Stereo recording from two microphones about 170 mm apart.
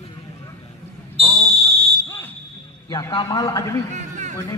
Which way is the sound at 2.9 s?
25° left (ahead or behind).